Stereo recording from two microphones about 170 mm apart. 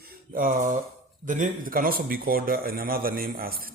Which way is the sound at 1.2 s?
50° right (ahead or behind).